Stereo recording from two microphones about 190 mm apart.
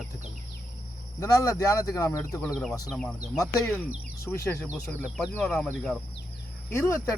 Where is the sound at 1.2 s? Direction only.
20° left (ahead or behind).